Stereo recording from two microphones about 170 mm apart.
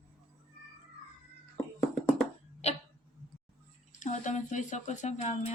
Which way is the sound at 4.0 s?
45° left (ahead or behind).